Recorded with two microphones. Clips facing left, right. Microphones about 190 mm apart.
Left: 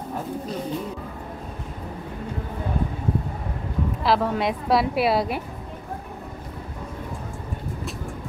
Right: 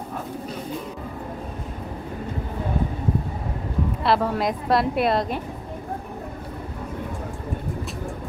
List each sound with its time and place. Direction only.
4.0 s a woman's voice: centre (ahead or behind)